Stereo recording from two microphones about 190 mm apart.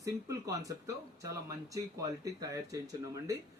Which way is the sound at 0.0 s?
15° right (ahead or behind).